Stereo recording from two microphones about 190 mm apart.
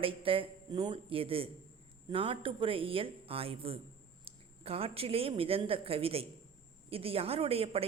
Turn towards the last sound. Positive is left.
turn(degrees=-30)  # may be behind; listen again after turning